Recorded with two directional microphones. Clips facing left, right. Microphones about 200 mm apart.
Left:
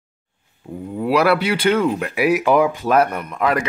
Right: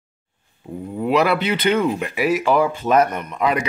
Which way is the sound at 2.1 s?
15° left (ahead or behind).